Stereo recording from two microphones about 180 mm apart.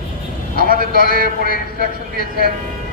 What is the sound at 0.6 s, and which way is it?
Speech, 55° right (ahead or behind).